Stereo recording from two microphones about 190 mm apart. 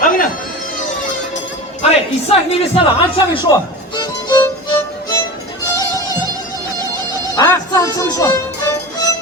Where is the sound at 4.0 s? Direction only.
20° left (ahead or behind).